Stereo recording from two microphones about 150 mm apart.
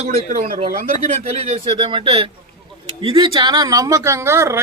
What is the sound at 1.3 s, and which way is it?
A man's voice, 45° right (ahead or behind).